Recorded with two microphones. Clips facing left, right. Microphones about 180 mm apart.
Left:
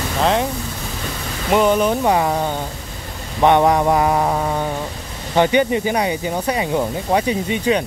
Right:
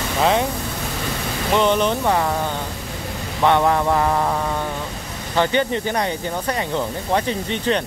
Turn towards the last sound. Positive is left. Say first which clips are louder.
# left 3 dB
turn(degrees=10)  # may be behind; listen again after turning